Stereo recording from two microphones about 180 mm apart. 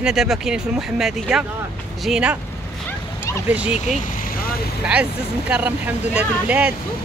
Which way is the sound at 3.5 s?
5° right (ahead or behind).